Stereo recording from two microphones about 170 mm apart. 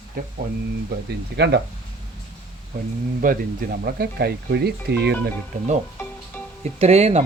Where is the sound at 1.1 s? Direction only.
80° right.